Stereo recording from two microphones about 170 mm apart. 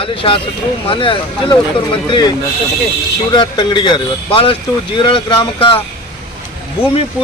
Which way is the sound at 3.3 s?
25° left (ahead or behind).